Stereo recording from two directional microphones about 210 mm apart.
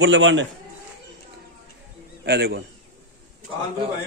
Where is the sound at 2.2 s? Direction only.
55° right (ahead or behind).